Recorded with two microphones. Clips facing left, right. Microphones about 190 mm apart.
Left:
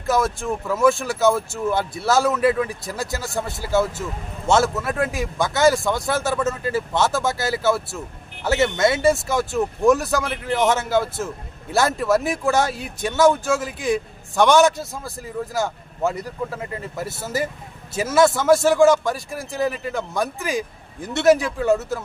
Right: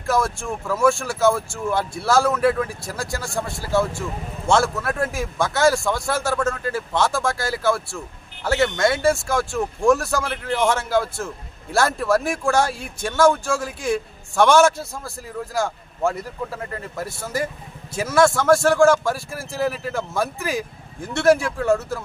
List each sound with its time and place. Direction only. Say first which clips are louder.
0.1 s speech: left 1 dB; centre (ahead or behind)
3.0 s speech: left 1 dB; 20° left (ahead or behind)
3.6 s speech: left 1 dB; 5° left (ahead or behind)
8.7 s speech: left 1 dB; 20° left (ahead or behind)
9.6 s speech: left 2 dB; centre (ahead or behind)
18.0 s speech: left 1 dB; 20° left (ahead or behind)
18.3 s speech: left 1 dB; centre (ahead or behind)